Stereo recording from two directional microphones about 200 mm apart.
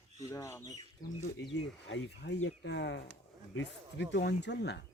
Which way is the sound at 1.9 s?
65° left (ahead or behind).